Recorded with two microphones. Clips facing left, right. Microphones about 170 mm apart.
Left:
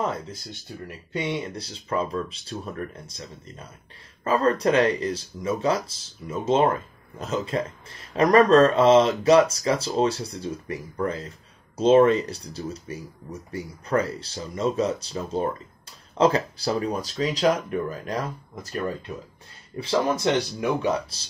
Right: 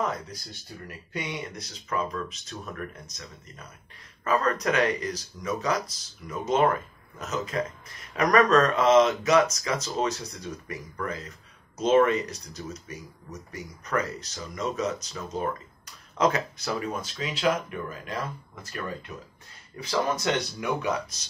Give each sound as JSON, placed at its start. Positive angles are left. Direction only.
{"t": 0.0, "sound": "speech", "side_deg": 30}
{"t": 19.8, "sound": "speech", "side_deg": 25}